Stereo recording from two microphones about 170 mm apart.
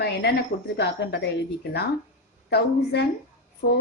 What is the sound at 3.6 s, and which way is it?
Speech, 55° left (ahead or behind).